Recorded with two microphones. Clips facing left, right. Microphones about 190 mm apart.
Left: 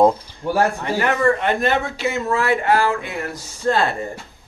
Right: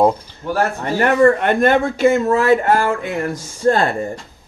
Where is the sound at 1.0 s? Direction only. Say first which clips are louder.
Right 6 dB; 50° right (ahead or behind).